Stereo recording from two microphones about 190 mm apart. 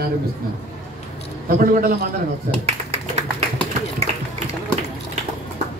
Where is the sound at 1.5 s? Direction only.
50° right (ahead or behind).